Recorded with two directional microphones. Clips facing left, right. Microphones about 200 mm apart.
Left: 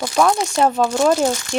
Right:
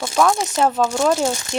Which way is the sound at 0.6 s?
5° left (ahead or behind).